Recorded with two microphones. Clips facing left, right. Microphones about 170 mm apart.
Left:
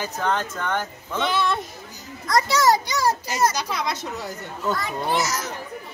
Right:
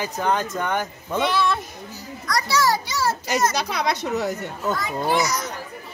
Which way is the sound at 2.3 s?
20° left (ahead or behind).